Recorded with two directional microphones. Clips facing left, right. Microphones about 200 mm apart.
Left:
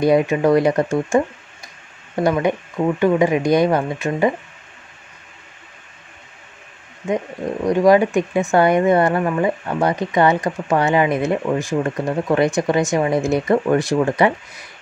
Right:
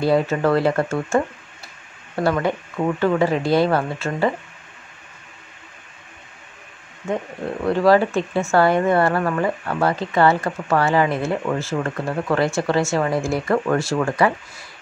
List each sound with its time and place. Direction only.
0.0 s speech: 15° left (ahead or behind)
7.1 s speech: 15° left (ahead or behind)